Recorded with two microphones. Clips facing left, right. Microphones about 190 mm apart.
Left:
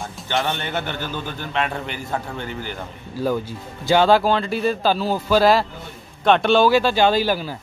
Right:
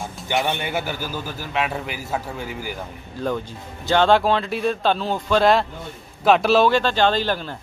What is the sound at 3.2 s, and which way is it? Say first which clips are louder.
Speech: left 3 dB; 5° left (ahead or behind).